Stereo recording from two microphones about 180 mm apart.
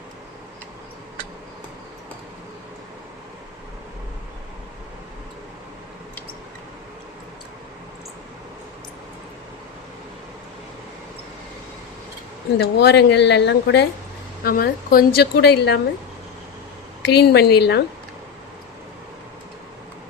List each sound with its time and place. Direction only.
12.5 s a woman's voice: 65° left (ahead or behind)
14.4 s speech: 55° left (ahead or behind)
17.1 s speech: 65° left (ahead or behind)